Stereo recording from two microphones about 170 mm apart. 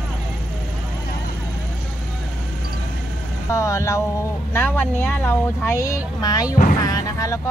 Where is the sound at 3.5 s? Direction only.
15° left (ahead or behind).